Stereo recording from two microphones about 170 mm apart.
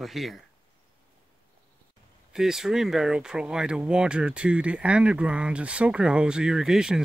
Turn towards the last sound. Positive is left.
turn(degrees=-5)  # may be behind; listen again after turning